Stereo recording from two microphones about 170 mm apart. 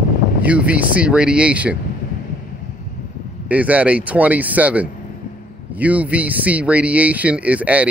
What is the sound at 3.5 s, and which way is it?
Speech, 10° right (ahead or behind).